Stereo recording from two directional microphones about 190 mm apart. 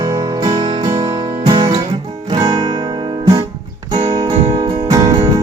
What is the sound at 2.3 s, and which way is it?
Music, 20° right (ahead or behind).